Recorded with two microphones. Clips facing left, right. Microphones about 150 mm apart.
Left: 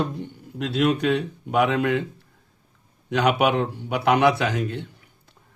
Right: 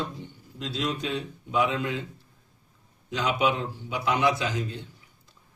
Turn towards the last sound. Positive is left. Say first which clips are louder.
# left 5 dB
turn(degrees=65)  # may be behind; listen again after turning